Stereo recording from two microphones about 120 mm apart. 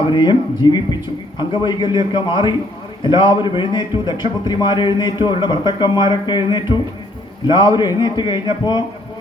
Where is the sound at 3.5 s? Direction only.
40° left (ahead or behind).